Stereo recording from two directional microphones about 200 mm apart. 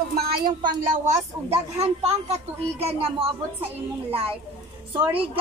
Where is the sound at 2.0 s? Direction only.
30° right (ahead or behind).